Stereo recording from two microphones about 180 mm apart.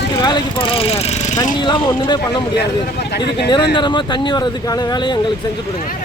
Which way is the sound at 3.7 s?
25° left (ahead or behind).